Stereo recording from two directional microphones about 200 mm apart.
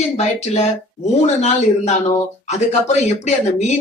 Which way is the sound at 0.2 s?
35° left (ahead or behind).